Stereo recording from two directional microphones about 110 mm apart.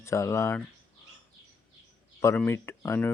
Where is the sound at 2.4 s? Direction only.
25° left (ahead or behind).